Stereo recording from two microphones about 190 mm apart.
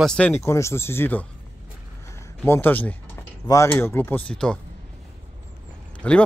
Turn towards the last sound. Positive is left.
turn(degrees=5)  # may be behind; listen again after turning